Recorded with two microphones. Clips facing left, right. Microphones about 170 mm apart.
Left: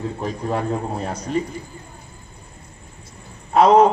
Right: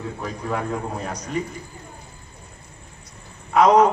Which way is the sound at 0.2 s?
30° left (ahead or behind).